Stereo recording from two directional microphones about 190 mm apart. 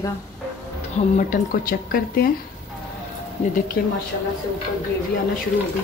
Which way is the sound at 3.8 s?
50° left (ahead or behind).